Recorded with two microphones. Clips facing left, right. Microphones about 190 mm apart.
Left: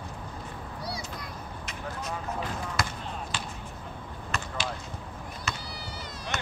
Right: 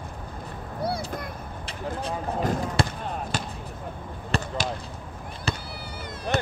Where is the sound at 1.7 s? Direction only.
30° right (ahead or behind).